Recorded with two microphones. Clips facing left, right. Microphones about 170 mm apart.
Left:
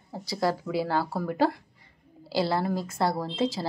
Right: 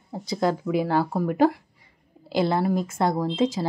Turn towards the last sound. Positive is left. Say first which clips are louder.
# right 5 dB
turn(degrees=-20)  # may be behind; listen again after turning